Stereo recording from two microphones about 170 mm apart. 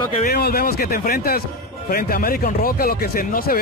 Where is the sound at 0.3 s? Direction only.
60° left (ahead or behind).